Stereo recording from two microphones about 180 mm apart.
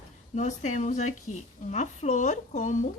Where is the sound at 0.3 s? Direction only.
40° left (ahead or behind).